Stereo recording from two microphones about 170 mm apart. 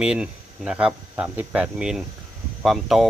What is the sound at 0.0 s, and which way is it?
Speech, 5° right (ahead or behind).